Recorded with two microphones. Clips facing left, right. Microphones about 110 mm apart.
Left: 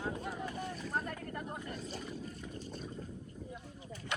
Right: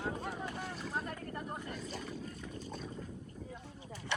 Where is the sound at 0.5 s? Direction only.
90° right.